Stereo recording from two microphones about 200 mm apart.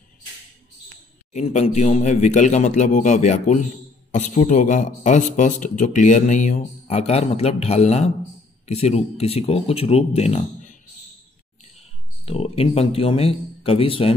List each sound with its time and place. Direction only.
1.3 s speech: 35° left (ahead or behind)
11.8 s speech: 30° left (ahead or behind)